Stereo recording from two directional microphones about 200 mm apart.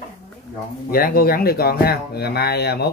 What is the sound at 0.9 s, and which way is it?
Speech, 50° left (ahead or behind).